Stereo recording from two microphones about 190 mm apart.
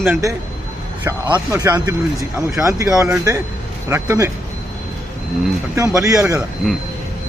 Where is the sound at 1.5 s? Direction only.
15° right (ahead or behind).